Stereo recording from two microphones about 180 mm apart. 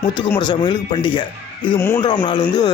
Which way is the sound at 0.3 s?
25° left (ahead or behind).